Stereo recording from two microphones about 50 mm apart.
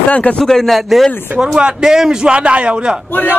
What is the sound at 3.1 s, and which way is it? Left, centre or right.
Speech, left.